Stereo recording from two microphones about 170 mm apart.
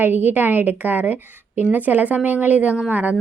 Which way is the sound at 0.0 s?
10° right (ahead or behind).